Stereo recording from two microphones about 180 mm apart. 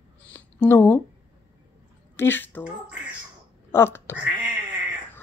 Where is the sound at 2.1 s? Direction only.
10° left (ahead or behind).